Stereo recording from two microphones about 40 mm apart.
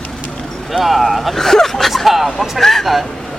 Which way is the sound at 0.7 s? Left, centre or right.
Centre.